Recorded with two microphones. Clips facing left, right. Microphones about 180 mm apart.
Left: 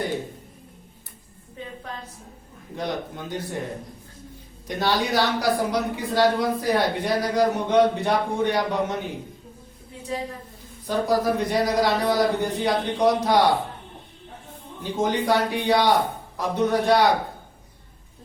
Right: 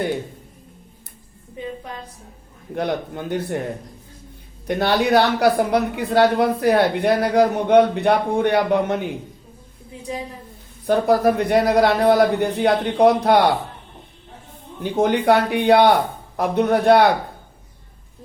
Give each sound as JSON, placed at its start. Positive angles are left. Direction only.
{"t": 2.7, "sound": "a woman's voice", "side_deg": -60}
{"t": 4.6, "sound": "a woman's voice", "side_deg": -60}
{"t": 10.8, "sound": "a woman's voice", "side_deg": -60}
{"t": 14.9, "sound": "a woman's voice", "side_deg": -60}